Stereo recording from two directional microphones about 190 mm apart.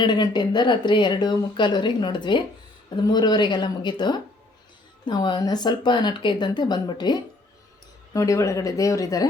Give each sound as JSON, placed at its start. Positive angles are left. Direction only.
{"t": 0.0, "sound": "speech", "side_deg": 20}